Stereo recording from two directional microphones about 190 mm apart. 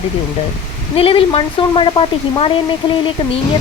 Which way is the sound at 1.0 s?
30° left (ahead or behind).